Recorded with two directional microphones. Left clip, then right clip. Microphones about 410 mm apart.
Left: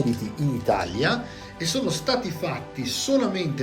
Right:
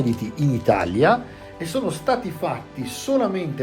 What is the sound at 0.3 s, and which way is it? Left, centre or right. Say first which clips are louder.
Speech: right 5 dB; centre.